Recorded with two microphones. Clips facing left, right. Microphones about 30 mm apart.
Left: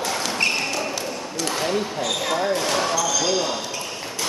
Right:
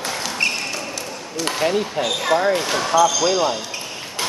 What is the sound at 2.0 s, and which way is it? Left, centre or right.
Speech, right.